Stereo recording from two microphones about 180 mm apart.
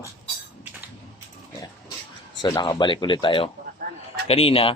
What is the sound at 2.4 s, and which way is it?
Speech, 25° left (ahead or behind).